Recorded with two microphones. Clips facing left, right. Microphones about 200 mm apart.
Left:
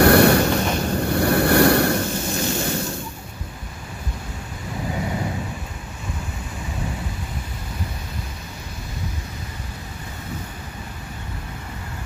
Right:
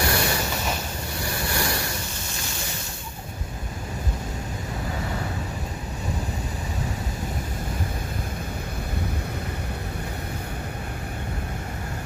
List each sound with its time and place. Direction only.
0.0 s vehicle: 60° left (ahead or behind)